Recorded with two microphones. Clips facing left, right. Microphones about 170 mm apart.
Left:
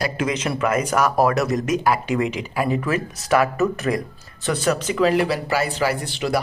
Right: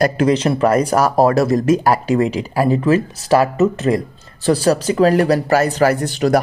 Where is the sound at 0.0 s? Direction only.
35° right (ahead or behind).